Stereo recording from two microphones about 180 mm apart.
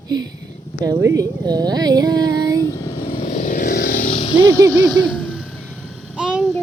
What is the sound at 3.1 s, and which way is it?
Vehicle, 35° left (ahead or behind).